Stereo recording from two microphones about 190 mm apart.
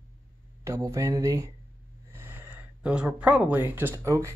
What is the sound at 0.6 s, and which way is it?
Speech, 15° right (ahead or behind).